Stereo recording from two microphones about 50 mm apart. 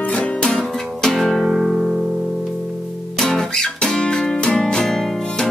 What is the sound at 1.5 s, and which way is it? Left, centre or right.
Music, centre.